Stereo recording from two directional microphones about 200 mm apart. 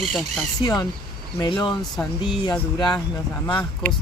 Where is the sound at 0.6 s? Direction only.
20° left (ahead or behind).